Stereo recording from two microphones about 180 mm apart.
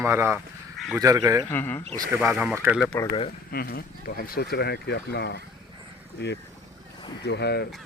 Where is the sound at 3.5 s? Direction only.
55° left (ahead or behind).